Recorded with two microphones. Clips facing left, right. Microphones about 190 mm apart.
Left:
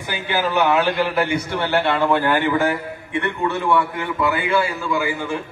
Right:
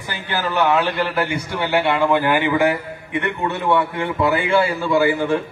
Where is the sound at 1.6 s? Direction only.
15° right (ahead or behind).